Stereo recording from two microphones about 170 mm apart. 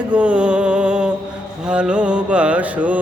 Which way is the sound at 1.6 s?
5° right (ahead or behind).